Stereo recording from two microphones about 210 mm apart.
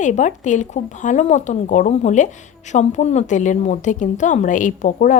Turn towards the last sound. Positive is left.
turn(degrees=35)  # may be behind; listen again after turning